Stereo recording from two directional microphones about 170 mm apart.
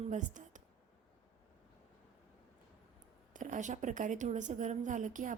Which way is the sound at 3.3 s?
50° right (ahead or behind).